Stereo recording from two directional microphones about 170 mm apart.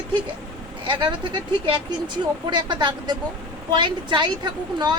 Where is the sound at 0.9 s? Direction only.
30° right (ahead or behind).